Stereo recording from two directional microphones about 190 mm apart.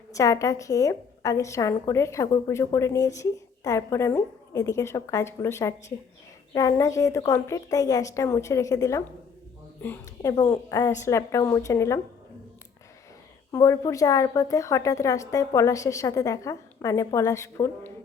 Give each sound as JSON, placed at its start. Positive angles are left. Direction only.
{"t": 0.1, "sound": "a woman's voice", "side_deg": 15}
{"t": 13.5, "sound": "a woman's voice", "side_deg": 15}